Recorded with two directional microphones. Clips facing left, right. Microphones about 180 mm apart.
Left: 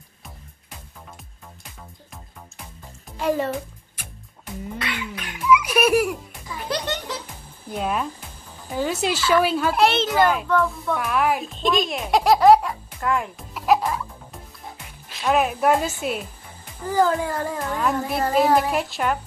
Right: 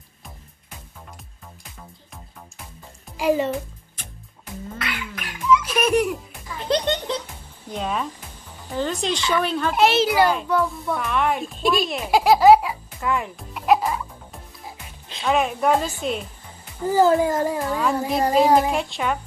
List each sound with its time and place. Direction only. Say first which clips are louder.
3.2 s music: right 2 dB; centre (ahead or behind)
4.8 s cough: left 1 dB; 20° left (ahead or behind)
5.5 s music: left 1 dB; 10° left (ahead or behind)
6.7 s a child's voice: right 6 dB; 25° right (ahead or behind)
7.7 s speech: left 1 dB; 5° left (ahead or behind)
11.9 s music: right 2 dB; centre (ahead or behind)
15.2 s speech: left 1 dB; 5° left (ahead or behind)
16.8 s a child's voice: right 4 dB; 20° right (ahead or behind)
18.7 s speech: even; 5° left (ahead or behind)